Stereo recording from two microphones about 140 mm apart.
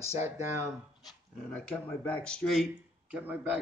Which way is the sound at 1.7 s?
10° left (ahead or behind).